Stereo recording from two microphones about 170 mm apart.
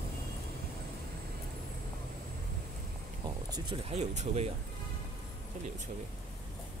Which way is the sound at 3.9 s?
40° right (ahead or behind).